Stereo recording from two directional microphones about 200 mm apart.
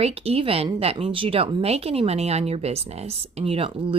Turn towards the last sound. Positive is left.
turn(degrees=-30)  # may be behind; listen again after turning